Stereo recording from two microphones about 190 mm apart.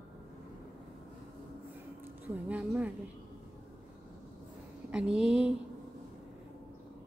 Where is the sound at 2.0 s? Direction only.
5° right (ahead or behind).